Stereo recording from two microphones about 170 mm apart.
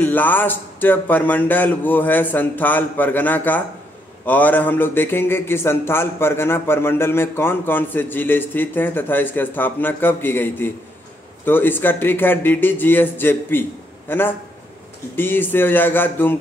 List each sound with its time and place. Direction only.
0.0 s a man's voice: 10° left (ahead or behind)